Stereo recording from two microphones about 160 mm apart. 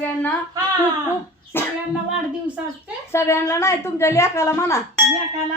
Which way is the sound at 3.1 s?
15° left (ahead or behind).